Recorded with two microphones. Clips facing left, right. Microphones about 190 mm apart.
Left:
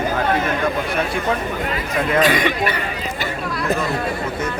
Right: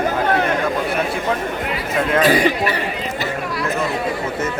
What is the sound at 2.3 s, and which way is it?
Speech, 35° right (ahead or behind).